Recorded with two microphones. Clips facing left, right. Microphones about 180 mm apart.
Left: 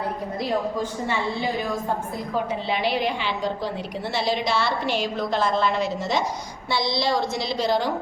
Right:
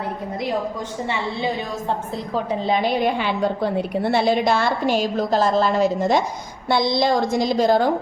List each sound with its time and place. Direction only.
2.5 s a woman's voice: 45° right (ahead or behind)